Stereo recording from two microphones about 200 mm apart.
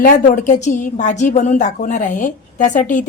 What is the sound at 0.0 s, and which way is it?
A woman's voice, 40° left (ahead or behind).